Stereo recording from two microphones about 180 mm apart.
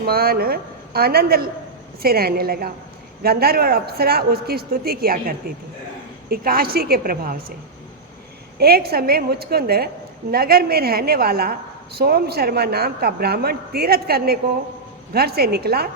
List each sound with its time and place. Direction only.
0.0 s a woman's voice: 60° right (ahead or behind)
6.3 s a woman's voice: 55° right (ahead or behind)
8.5 s a woman's voice: 60° right (ahead or behind)